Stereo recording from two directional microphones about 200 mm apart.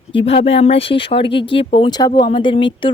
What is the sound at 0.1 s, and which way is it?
A woman's voice, 25° left (ahead or behind).